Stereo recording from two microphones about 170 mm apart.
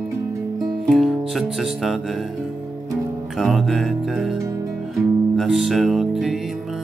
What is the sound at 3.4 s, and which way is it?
Music, centre (ahead or behind).